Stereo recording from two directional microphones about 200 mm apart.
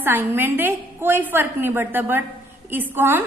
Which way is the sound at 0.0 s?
10° right (ahead or behind).